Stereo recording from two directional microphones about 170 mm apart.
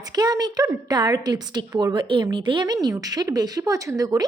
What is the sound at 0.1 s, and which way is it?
A woman's voice, 25° right (ahead or behind).